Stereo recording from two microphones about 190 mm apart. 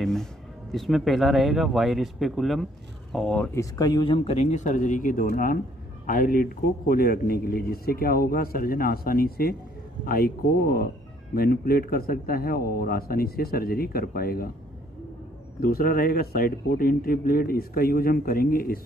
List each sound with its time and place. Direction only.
0.0 s speech: centre (ahead or behind)
3.5 s a man's voice: 20° left (ahead or behind); by 14.5 s 50° left (ahead or behind)
15.6 s a man's voice: 50° left (ahead or behind)